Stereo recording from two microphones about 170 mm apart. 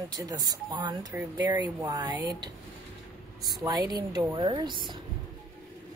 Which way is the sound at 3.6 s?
25° right (ahead or behind).